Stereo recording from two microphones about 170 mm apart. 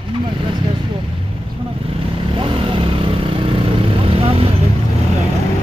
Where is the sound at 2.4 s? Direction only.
30° right (ahead or behind).